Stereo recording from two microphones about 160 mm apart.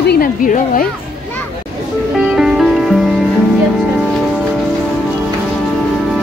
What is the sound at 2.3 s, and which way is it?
Music, centre (ahead or behind).